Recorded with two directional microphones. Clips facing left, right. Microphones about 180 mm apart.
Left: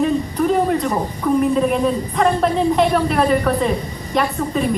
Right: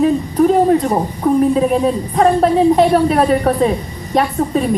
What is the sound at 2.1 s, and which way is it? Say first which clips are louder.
A woman's voice: right 6 dB; 40° right (ahead or behind).